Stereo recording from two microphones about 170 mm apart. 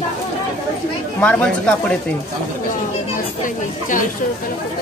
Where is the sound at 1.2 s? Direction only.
5° left (ahead or behind).